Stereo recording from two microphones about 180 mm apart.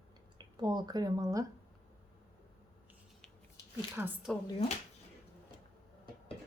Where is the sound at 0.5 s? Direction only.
25° right (ahead or behind).